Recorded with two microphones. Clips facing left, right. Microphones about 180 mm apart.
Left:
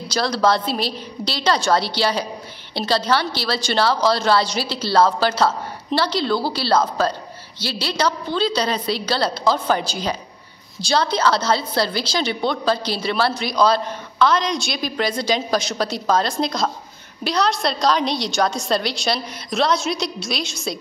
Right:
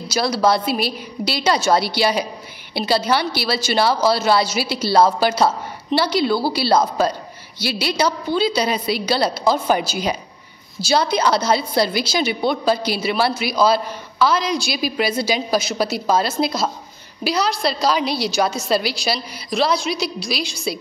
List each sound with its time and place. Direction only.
0.1 s a woman's voice: 10° right (ahead or behind)